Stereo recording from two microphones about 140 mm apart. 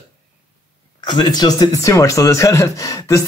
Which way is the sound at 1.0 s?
30° left (ahead or behind).